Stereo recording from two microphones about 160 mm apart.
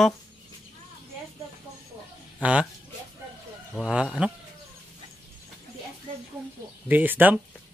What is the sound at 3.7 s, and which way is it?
Speech, 5° right (ahead or behind).